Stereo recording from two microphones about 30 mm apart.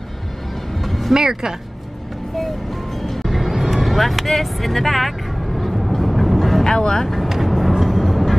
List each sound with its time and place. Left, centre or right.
0.8 s vehicle: centre
1.1 s speech: centre
3.0 s music: centre
3.3 s vehicle: centre
6.6 s speech: left
7.2 s vehicle: centre
7.8 s vehicle: centre